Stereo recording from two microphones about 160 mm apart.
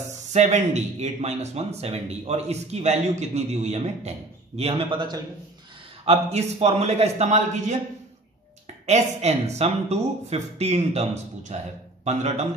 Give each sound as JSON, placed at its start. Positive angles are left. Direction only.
{"t": 0.3, "sound": "a man's voice", "side_deg": -45}
{"t": 6.0, "sound": "speech", "side_deg": -45}